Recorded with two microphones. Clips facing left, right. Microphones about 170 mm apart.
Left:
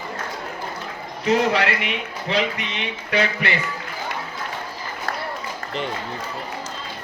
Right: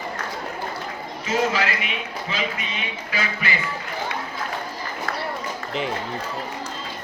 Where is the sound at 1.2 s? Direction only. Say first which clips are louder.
Left 4 dB; 65° left (ahead or behind).